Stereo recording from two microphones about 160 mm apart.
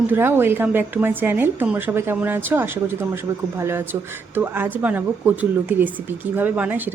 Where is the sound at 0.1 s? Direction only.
15° right (ahead or behind).